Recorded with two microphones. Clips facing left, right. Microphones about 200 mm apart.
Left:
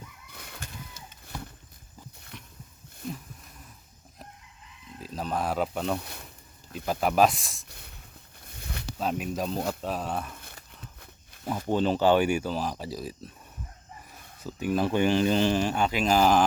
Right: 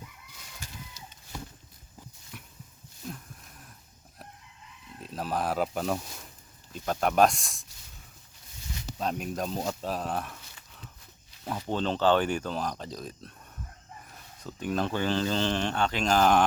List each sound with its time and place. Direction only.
0.3 s a sound: 60° left (ahead or behind)
2.3 s a sound: 5° right (ahead or behind)
4.9 s speech: centre (ahead or behind)
6.0 s speech: 60° left (ahead or behind)
6.7 s speech: 5° left (ahead or behind)
7.7 s snort: 60° left (ahead or behind)
8.4 s a sound: 60° left (ahead or behind)
9.0 s speech: 5° left (ahead or behind)
11.7 s speech: 10° left (ahead or behind)
14.4 s speech: 5° left (ahead or behind)